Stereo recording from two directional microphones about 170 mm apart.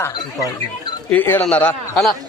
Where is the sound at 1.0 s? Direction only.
10° left (ahead or behind).